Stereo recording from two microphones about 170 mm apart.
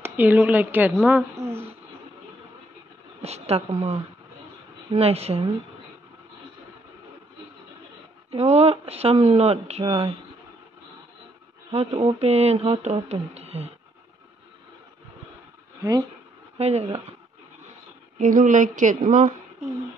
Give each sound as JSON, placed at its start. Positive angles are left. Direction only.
{"t": 0.0, "sound": "a woman's voice", "side_deg": -10}
{"t": 1.5, "sound": "a sound", "side_deg": -35}
{"t": 3.2, "sound": "a woman's voice", "side_deg": -40}
{"t": 8.3, "sound": "speech", "side_deg": -40}
{"t": 11.7, "sound": "speech", "side_deg": -40}
{"t": 15.8, "sound": "speech", "side_deg": -25}
{"t": 16.5, "sound": "speech", "side_deg": -40}
{"t": 18.2, "sound": "a woman's voice", "side_deg": -50}